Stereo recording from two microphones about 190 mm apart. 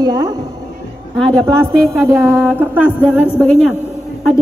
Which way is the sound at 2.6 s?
10° right (ahead or behind).